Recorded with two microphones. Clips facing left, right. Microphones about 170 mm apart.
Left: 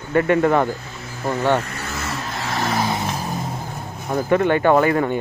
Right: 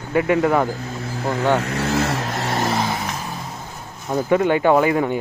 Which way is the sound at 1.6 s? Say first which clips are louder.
Right 7 dB; 70° right (ahead or behind).